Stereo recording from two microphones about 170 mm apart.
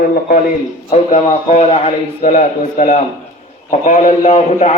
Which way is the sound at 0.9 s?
40° left (ahead or behind).